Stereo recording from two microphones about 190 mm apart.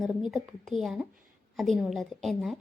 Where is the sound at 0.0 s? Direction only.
Centre (ahead or behind).